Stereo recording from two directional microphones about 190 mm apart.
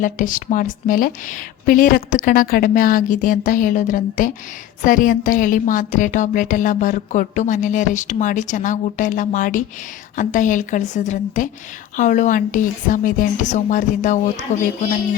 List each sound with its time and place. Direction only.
0.0 s a woman's voice: 45° left (ahead or behind)